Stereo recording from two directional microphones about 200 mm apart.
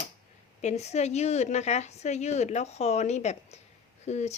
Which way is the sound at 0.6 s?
35° left (ahead or behind).